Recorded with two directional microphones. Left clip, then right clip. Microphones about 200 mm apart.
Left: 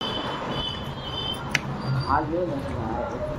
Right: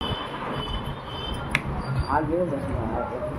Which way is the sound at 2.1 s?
40° right (ahead or behind).